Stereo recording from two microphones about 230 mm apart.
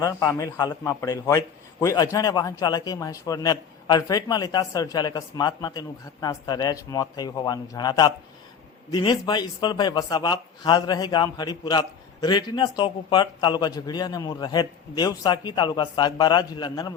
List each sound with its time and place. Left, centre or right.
0.0 s a man's voice: centre